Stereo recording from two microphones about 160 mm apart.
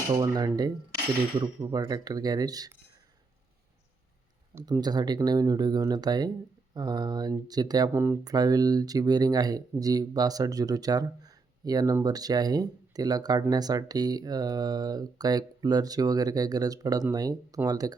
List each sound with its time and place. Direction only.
0.1 s speech: 25° right (ahead or behind)
4.5 s speech: 20° right (ahead or behind)